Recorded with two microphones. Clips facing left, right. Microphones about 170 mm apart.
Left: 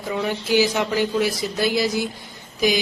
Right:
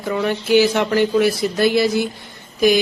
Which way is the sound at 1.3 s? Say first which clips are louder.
Right 6 dB; 65° right (ahead or behind).